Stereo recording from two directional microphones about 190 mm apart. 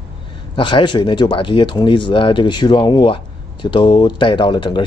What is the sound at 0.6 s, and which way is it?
Speech, 25° left (ahead or behind).